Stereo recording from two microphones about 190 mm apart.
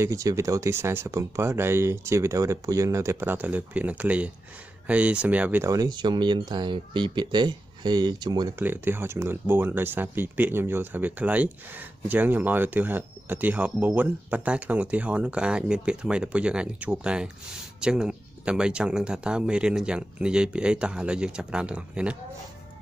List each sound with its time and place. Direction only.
0.0 s speech: 15° right (ahead or behind)